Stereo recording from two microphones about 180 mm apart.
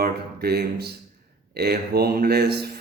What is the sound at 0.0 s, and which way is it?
Speech, 60° right (ahead or behind).